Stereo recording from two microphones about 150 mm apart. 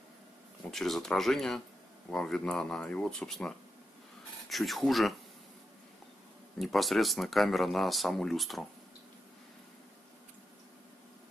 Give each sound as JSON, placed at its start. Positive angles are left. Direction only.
{"t": 0.7, "sound": "speech", "side_deg": 0}
{"t": 6.6, "sound": "speech", "side_deg": 0}